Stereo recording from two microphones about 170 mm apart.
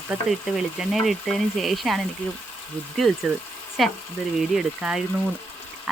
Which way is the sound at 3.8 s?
Centre (ahead or behind).